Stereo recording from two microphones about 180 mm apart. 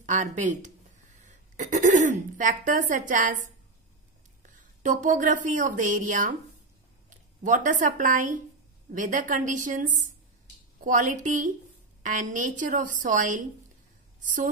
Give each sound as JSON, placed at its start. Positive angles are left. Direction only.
{"t": 0.0, "sound": "a woman's voice", "side_deg": -40}
{"t": 4.6, "sound": "a woman's voice", "side_deg": -45}
{"t": 7.4, "sound": "a woman's voice", "side_deg": -45}